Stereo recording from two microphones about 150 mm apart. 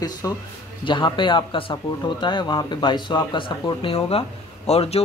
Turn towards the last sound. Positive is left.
turn(degrees=45)  # may be behind; listen again after turning